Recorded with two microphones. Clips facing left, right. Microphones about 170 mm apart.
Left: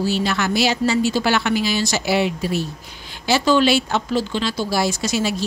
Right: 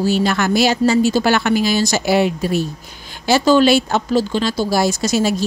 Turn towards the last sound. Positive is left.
turn(degrees=-45)  # may be behind; listen again after turning